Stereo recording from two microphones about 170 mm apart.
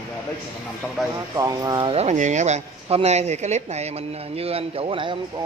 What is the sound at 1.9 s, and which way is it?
Speech, 40° right (ahead or behind).